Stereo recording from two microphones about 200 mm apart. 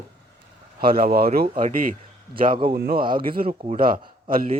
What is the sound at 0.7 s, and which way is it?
Speech, 50° right (ahead or behind).